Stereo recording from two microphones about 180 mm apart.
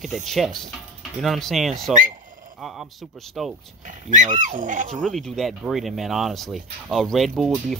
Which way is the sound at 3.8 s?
45° right (ahead or behind).